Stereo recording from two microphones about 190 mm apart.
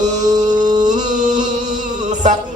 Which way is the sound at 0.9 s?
40° right (ahead or behind).